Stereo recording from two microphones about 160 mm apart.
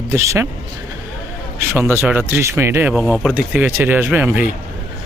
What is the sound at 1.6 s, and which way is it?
Speech, 15° right (ahead or behind).